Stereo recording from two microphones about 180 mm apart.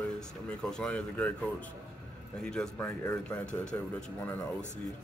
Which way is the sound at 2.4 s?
5° left (ahead or behind).